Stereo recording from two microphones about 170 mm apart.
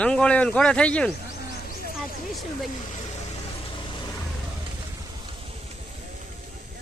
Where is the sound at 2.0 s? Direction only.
Centre (ahead or behind).